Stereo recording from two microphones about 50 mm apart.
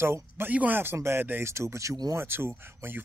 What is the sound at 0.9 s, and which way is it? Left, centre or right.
Speech, right.